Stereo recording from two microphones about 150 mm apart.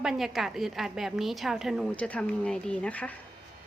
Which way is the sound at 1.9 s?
10° left (ahead or behind).